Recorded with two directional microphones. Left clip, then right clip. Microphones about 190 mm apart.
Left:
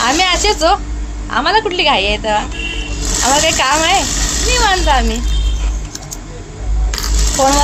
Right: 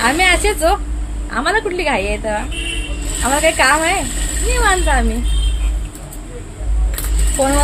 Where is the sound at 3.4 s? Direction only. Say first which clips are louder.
Even; centre (ahead or behind).